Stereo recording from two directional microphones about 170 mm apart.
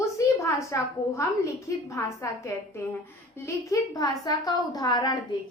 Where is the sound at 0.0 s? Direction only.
20° left (ahead or behind).